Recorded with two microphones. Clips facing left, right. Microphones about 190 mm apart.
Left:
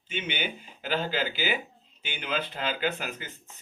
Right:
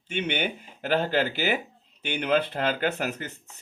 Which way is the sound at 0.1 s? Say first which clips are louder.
Right 5 dB; 65° right (ahead or behind).